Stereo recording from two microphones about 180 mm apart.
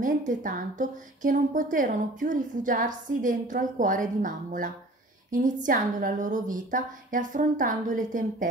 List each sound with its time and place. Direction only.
0.0 s a woman's voice: 45° right (ahead or behind)